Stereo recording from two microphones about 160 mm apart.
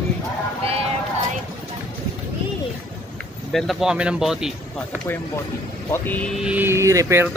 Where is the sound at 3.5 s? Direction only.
Centre (ahead or behind).